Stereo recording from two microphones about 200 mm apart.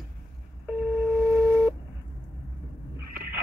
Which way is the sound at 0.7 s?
10° right (ahead or behind).